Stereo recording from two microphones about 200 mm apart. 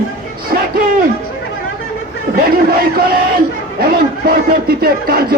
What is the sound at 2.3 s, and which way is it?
Speech, 45° right (ahead or behind).